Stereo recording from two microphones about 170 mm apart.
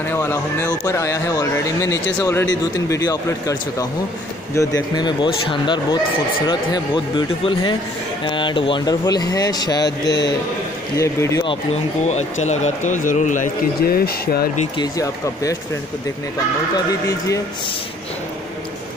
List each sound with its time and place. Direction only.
0.0 s speech: 15° left (ahead or behind)
12.1 s a man's voice: 40° left (ahead or behind); by 14.6 s 60° left (ahead or behind)
14.8 s speech: 20° left (ahead or behind)